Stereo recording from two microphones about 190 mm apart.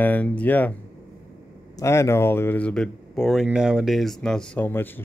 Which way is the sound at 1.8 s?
15° left (ahead or behind).